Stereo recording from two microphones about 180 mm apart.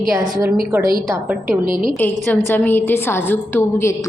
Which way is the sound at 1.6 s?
50° right (ahead or behind).